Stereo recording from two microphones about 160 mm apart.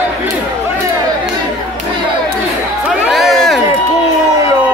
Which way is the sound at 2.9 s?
Centre (ahead or behind).